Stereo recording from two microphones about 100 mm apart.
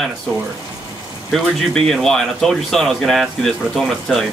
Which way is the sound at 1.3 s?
5° left (ahead or behind).